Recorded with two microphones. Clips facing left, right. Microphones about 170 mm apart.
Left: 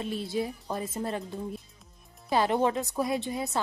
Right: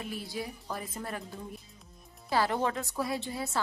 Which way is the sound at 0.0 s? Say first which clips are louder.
Left 6 dB; 25° left (ahead or behind).